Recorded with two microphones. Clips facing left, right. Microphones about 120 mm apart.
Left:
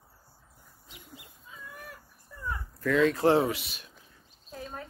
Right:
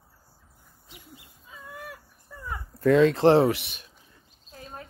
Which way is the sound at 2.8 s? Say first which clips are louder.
Right 6 dB; 35° right (ahead or behind).